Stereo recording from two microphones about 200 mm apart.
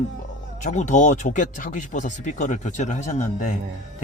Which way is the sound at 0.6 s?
35° left (ahead or behind).